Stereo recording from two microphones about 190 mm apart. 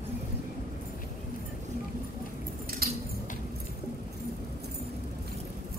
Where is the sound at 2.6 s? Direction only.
50° right (ahead or behind).